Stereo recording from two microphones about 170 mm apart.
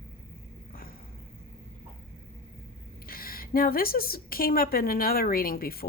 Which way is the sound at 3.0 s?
60° left (ahead or behind).